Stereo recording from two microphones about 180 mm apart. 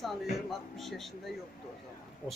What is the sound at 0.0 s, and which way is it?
Speech, centre (ahead or behind).